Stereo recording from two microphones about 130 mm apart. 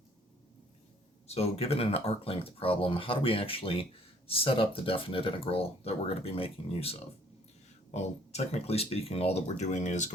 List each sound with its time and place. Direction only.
1.3 s speech: 50° left (ahead or behind); by 10.1 s 70° left (ahead or behind)